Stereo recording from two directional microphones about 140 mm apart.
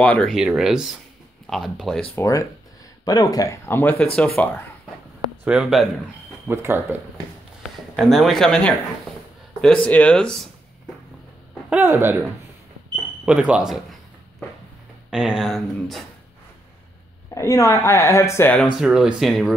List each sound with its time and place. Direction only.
0.0 s speech: 10° left (ahead or behind)
0.4 s speech: 5° right (ahead or behind)
2.1 s speech: 20° left (ahead or behind)
5.4 s speech: 5° right (ahead or behind)
6.4 s speech: 15° right (ahead or behind)
7.9 s speech: centre (ahead or behind)
11.7 s speech: 15° right (ahead or behind)
15.0 s speech: 5° right (ahead or behind)
17.3 s speech: 25° left (ahead or behind)
18.8 s speech: 5° right (ahead or behind)